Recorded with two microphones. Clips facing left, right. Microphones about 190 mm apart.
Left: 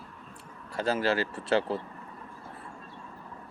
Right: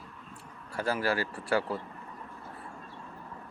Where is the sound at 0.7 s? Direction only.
20° left (ahead or behind).